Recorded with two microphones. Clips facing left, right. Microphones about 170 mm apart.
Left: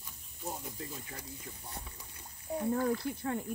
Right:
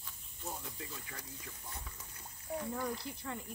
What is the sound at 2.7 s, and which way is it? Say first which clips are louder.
Speech: left 8 dB; 55° left (ahead or behind).